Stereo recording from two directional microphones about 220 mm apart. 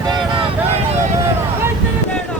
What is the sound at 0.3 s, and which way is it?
Vehicle, 25° right (ahead or behind).